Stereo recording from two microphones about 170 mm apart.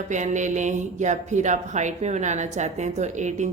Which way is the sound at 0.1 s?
45° right (ahead or behind).